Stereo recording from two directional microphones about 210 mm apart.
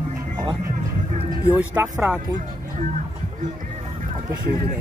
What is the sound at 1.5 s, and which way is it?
Speech, 10° right (ahead or behind).